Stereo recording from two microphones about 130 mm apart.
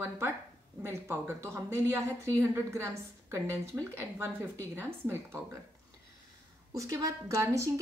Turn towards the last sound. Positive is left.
turn(degrees=-25)  # may be behind; listen again after turning